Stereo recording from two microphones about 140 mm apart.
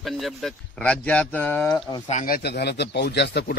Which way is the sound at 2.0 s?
75° left (ahead or behind).